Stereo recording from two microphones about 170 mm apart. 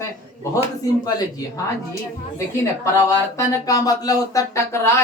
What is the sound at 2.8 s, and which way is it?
Speech, 15° left (ahead or behind).